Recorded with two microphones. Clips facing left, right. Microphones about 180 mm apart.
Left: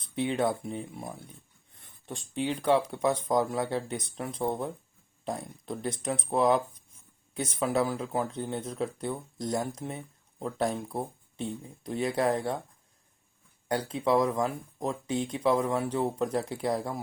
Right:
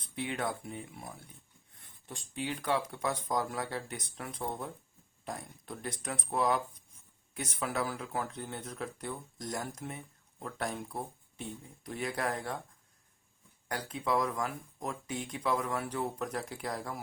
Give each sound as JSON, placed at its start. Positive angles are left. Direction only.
{"t": 0.2, "sound": "speech", "side_deg": 25}
{"t": 13.7, "sound": "speech", "side_deg": 25}